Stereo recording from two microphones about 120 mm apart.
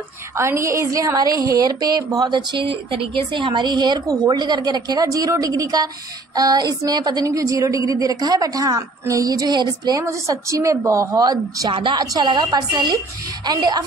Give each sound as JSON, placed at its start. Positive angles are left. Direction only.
{"t": 0.4, "sound": "a woman's voice", "side_deg": -25}
{"t": 11.7, "sound": "speech", "side_deg": -40}